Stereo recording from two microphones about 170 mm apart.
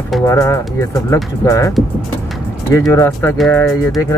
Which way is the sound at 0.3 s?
15° left (ahead or behind).